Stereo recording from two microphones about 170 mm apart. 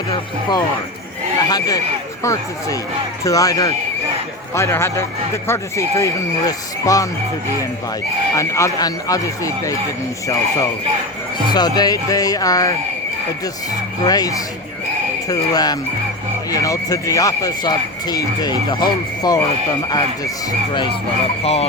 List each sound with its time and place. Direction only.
1.5 s speech: 20° left (ahead or behind)
8.4 s speech: 20° left (ahead or behind)
14.0 s speech: 20° left (ahead or behind)
21.4 s speech: 35° left (ahead or behind)